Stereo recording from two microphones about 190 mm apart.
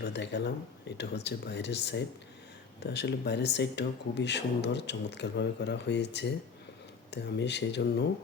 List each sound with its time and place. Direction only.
0.0 s speech: 65° left (ahead or behind)